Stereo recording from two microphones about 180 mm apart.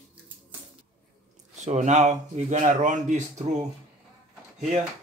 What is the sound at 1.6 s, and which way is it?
Speech, 40° right (ahead or behind).